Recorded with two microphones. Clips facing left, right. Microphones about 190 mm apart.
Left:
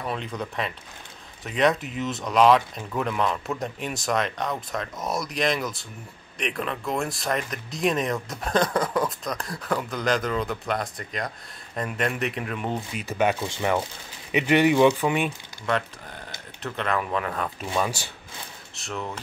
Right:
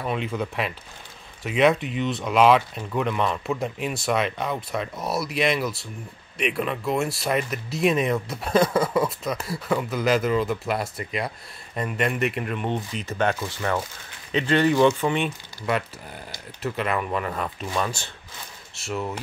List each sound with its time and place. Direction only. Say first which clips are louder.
0.0 s speech: right 4 dB; 5° right (ahead or behind)
16.6 s speech: right 1 dB; 5° right (ahead or behind)
17.7 s speech: left 1 dB; 10° left (ahead or behind)
18.8 s speech: right 4 dB; 5° right (ahead or behind)